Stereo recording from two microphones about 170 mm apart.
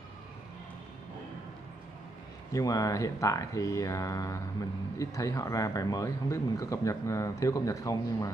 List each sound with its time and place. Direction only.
2.5 s speech: 20° left (ahead or behind)